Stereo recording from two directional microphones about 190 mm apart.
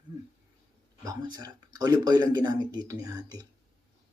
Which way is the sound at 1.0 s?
20° right (ahead or behind).